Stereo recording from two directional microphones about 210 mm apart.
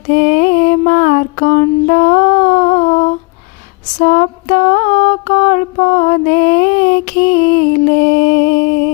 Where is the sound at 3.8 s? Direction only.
35° left (ahead or behind).